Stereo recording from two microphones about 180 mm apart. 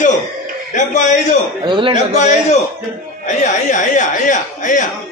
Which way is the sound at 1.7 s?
30° right (ahead or behind).